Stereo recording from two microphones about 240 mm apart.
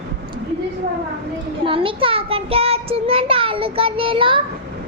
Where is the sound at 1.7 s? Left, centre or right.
Right.